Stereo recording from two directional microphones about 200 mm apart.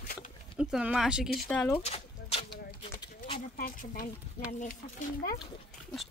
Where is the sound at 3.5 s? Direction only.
45° left (ahead or behind).